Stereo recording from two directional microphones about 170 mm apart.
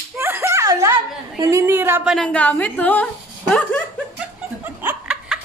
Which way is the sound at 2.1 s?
5° left (ahead or behind).